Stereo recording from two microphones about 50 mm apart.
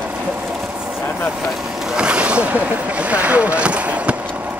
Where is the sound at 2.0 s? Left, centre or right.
Right.